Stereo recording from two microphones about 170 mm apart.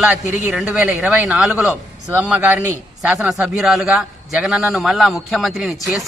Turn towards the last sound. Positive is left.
turn(degrees=0)  # may be behind; listen again after turning